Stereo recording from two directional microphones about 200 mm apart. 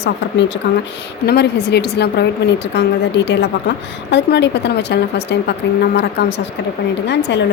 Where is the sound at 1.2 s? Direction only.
55° left (ahead or behind).